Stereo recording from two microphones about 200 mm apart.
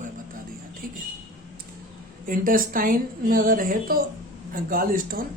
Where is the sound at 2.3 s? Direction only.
45° right (ahead or behind).